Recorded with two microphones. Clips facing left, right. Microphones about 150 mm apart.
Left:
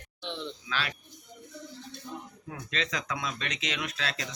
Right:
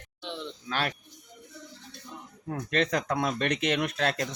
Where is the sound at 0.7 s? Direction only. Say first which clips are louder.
Right 5 dB; 50° right (ahead or behind).